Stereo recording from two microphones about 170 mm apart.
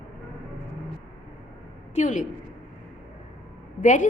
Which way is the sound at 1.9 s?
45° left (ahead or behind).